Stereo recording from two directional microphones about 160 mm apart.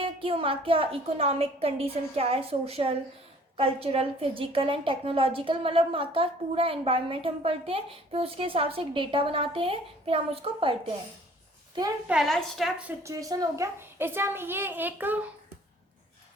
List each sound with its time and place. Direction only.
0.0 s a woman's voice: 35° right (ahead or behind)
12.0 s a woman's voice: centre (ahead or behind)
13.0 s a woman's voice: 20° right (ahead or behind)